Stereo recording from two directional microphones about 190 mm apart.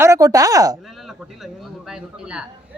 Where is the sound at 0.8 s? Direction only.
Centre (ahead or behind).